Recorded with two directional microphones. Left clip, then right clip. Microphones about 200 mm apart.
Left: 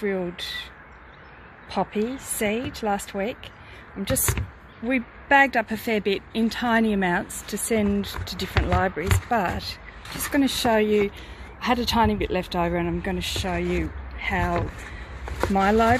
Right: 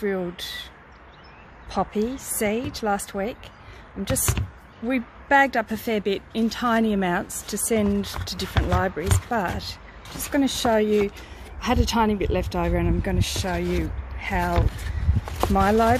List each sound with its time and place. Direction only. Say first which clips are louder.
0.0 s speech: even; 5° right (ahead or behind)
1.7 s speech: right 1 dB; 5° right (ahead or behind)
4.8 s speech: left 1 dB; 5° right (ahead or behind)
15.5 s speech: even; centre (ahead or behind)